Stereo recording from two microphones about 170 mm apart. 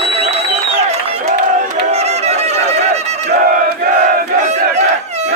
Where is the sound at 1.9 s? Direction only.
40° right (ahead or behind).